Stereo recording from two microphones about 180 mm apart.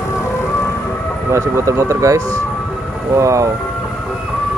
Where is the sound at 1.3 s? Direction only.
15° right (ahead or behind).